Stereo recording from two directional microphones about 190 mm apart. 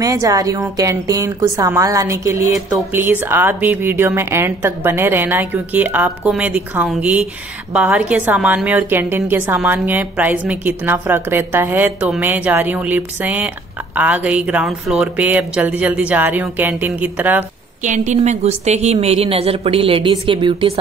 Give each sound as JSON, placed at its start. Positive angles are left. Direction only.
{"t": 0.0, "sound": "a woman's voice", "side_deg": -20}
{"t": 17.8, "sound": "a woman's voice", "side_deg": -40}